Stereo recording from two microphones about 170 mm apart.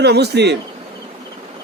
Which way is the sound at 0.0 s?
75° right (ahead or behind).